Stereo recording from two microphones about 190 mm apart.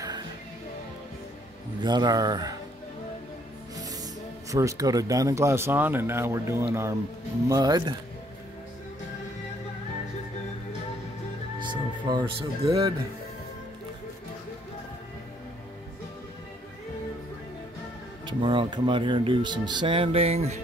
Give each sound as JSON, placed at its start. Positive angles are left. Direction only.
{"t": 0.0, "sound": "music", "side_deg": -20}
{"t": 1.8, "sound": "speech", "side_deg": -20}
{"t": 3.7, "sound": "music", "side_deg": -20}
{"t": 4.5, "sound": "speech", "side_deg": -15}
{"t": 11.6, "sound": "speech", "side_deg": -25}
{"t": 18.2, "sound": "speech", "side_deg": -25}